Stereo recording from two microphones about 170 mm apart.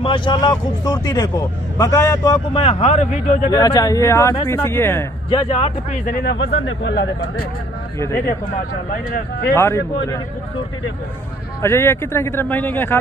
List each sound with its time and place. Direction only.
0.0 s speech: 30° left (ahead or behind)
3.4 s speech: 20° left (ahead or behind)
5.3 s speech: 35° left (ahead or behind)
6.0 s speech: 70° left (ahead or behind)
9.6 s speech: 15° left (ahead or behind)
11.6 s speech: 15° left (ahead or behind)